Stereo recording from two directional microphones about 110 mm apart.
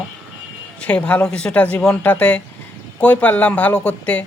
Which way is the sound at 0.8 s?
10° left (ahead or behind).